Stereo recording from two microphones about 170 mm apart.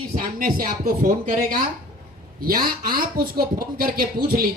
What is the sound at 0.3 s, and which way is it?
Speech, 55° right (ahead or behind).